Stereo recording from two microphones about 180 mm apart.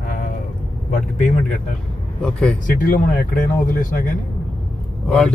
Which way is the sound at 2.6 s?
50° left (ahead or behind).